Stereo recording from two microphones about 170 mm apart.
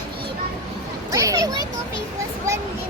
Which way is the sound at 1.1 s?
20° right (ahead or behind).